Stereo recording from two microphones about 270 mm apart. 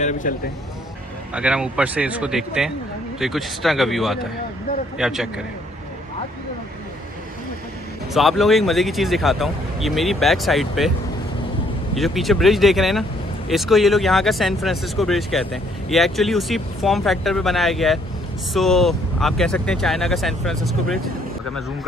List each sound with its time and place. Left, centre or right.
0.0 s speech: left
1.3 s speech: centre
8.1 s speech: centre
11.9 s speech: centre